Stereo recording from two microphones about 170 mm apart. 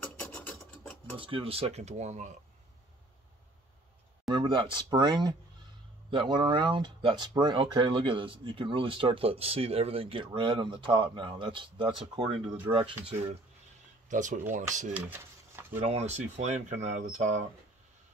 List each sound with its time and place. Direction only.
0.0 s mechanisms: 5° left (ahead or behind)
1.1 s speech: 30° right (ahead or behind)
4.3 s speech: 30° right (ahead or behind)
6.3 s speech: 30° right (ahead or behind)
14.0 s speech: 50° right (ahead or behind)
15.0 s a sound: 10° right (ahead or behind)
15.8 s speech: 40° right (ahead or behind)